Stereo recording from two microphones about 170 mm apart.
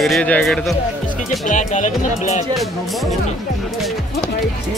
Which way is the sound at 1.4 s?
45° left (ahead or behind).